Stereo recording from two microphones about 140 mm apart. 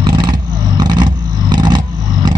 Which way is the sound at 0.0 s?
35° right (ahead or behind).